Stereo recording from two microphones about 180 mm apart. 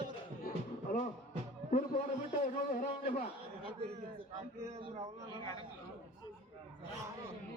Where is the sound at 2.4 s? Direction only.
50° left (ahead or behind).